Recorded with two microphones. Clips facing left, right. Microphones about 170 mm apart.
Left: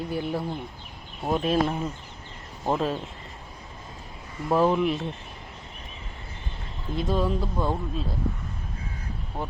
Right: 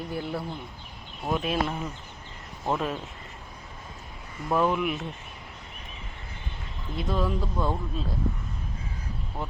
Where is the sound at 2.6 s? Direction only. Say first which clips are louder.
Left 3 dB; 25° left (ahead or behind).